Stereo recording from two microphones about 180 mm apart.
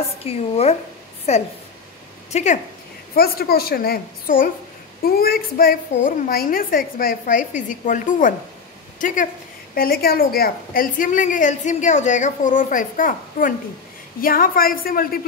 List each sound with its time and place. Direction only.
0.2 s a woman's voice: 35° left (ahead or behind)
3.2 s a woman's voice: 55° left (ahead or behind)
9.8 s a woman's voice: 55° left (ahead or behind)